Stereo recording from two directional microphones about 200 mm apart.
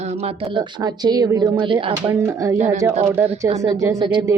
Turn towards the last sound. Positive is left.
turn(degrees=-15)  # may be behind; listen again after turning